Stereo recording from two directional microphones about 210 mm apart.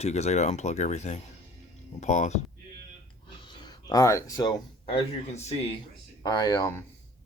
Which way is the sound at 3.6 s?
20° left (ahead or behind).